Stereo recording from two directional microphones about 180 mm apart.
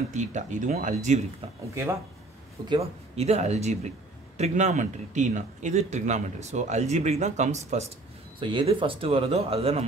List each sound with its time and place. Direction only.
0.1 s speech: 45° right (ahead or behind)
2.7 s a man's voice: 35° right (ahead or behind)
8.4 s a man's voice: 25° right (ahead or behind)